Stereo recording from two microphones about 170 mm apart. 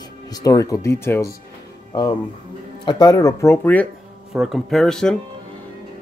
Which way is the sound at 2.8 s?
25° left (ahead or behind).